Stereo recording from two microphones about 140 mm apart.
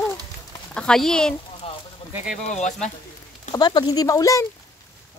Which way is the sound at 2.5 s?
55° left (ahead or behind).